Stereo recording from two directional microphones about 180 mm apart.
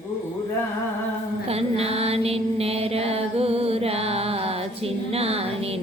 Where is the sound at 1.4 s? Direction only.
35° right (ahead or behind).